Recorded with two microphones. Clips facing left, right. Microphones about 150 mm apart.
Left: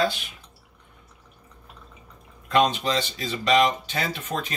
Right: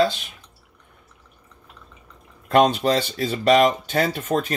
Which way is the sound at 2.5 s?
50° right (ahead or behind).